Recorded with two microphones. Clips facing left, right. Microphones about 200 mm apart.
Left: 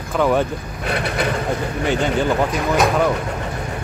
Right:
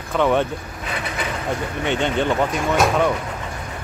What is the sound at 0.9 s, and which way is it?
Vehicle, 70° left (ahead or behind).